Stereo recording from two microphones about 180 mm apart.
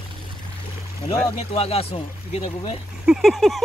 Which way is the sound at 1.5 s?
35° left (ahead or behind).